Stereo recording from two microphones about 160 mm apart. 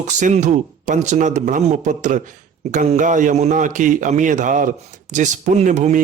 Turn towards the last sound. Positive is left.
turn(degrees=-50)  # may be behind; listen again after turning